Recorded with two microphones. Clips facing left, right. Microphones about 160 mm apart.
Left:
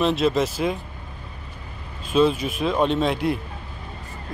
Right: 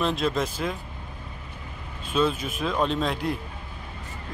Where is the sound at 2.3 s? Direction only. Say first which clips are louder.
Left 5 dB; 45° right (ahead or behind).